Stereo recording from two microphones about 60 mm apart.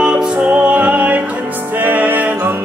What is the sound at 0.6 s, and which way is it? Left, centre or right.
Music, right.